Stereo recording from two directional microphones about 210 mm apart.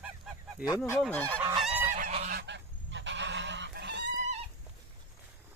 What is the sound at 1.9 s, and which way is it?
Goose, 35° right (ahead or behind).